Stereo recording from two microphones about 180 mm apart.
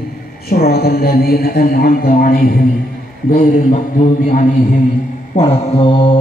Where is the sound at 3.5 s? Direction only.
45° left (ahead or behind).